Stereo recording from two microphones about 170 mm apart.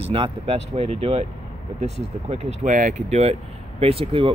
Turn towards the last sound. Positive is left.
turn(degrees=-35)  # may be behind; listen again after turning